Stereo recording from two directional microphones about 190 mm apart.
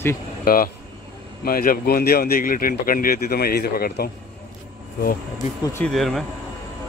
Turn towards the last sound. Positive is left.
turn(degrees=0)  # may be behind; listen again after turning